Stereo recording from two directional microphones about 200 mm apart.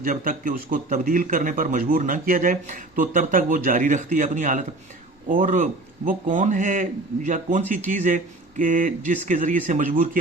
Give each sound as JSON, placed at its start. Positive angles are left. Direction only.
{"t": 0.0, "sound": "a man's voice", "side_deg": -45}